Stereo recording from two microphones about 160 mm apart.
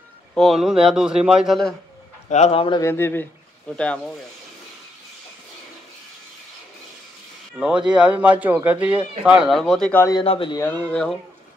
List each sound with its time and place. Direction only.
0.3 s a man's voice: centre (ahead or behind)
2.2 s speech: 45° left (ahead or behind)
2.8 s speech: 15° left (ahead or behind)
7.5 s a man's voice: 5° right (ahead or behind)
10.1 s speech: 35° left (ahead or behind)
10.6 s a man's voice: 10° left (ahead or behind)